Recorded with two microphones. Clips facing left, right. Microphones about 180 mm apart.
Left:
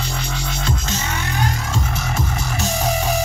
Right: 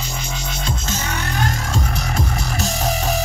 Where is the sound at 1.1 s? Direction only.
40° right (ahead or behind).